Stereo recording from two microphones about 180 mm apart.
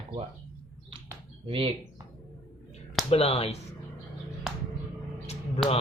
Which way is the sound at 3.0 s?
35° left (ahead or behind).